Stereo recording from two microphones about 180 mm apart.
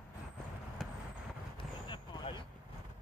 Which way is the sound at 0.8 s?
Centre (ahead or behind).